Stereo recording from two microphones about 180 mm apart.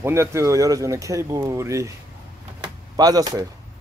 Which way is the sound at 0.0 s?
15° right (ahead or behind).